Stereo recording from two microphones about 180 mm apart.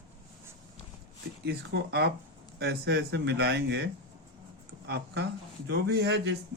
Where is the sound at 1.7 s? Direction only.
70° right (ahead or behind).